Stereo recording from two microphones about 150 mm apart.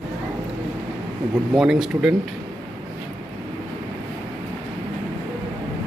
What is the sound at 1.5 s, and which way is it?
Speech, 5° right (ahead or behind).